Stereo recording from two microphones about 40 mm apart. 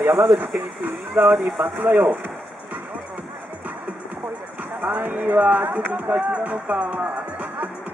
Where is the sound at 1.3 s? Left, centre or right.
Centre.